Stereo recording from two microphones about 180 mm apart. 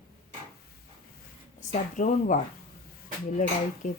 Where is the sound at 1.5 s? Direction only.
45° left (ahead or behind).